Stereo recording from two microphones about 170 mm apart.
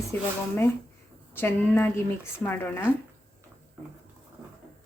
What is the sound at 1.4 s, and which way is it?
A woman's voice, 10° left (ahead or behind).